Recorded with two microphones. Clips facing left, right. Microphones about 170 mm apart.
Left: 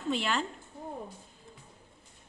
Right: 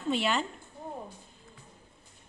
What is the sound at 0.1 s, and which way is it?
Speech, centre (ahead or behind).